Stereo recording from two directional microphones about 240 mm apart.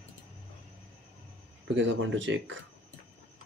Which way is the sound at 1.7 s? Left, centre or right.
Right.